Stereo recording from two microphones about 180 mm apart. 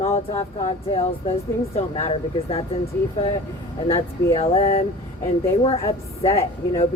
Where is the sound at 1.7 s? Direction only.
35° left (ahead or behind).